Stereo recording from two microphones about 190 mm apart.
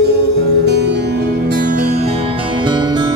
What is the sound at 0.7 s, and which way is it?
Music, 65° right (ahead or behind).